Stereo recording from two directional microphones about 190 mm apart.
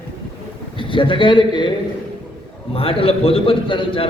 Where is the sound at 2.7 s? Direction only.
30° left (ahead or behind).